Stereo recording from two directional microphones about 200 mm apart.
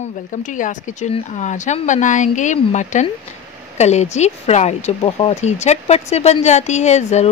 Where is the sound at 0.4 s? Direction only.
40° left (ahead or behind).